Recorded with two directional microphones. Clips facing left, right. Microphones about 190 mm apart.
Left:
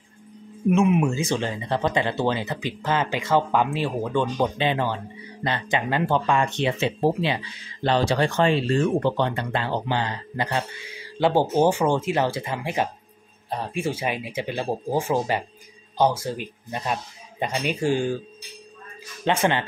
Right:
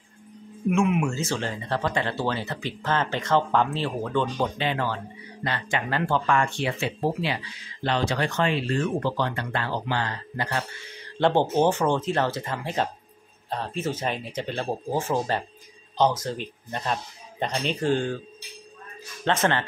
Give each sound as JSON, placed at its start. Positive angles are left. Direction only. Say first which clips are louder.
{"t": 0.7, "sound": "speech", "louder": "left 3 dB", "side_deg": 20}
{"t": 19.2, "sound": "speech", "louder": "left 2 dB", "side_deg": 15}